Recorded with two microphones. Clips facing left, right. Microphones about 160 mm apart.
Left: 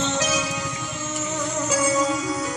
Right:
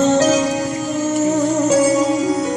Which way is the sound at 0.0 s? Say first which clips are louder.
Right 11 dB; 45° right (ahead or behind).